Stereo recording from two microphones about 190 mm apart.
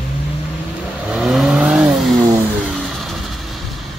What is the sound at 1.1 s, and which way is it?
Vehicle, centre (ahead or behind).